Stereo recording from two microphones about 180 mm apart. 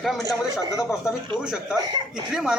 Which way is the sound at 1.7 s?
20° right (ahead or behind).